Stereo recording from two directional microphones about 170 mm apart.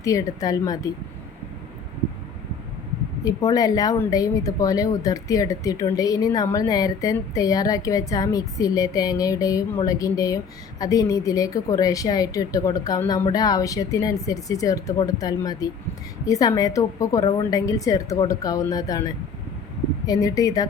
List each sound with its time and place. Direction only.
0.0 s a woman's voice: 20° left (ahead or behind)
3.2 s a woman's voice: 20° left (ahead or behind)
20.1 s a woman's voice: 20° left (ahead or behind)